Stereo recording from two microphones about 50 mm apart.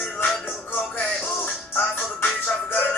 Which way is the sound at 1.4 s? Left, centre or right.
Left.